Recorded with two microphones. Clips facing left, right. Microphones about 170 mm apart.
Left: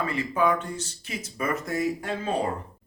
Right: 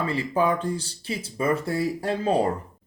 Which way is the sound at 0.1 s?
30° right (ahead or behind).